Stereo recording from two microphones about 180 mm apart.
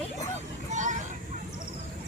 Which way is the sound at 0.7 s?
45° right (ahead or behind).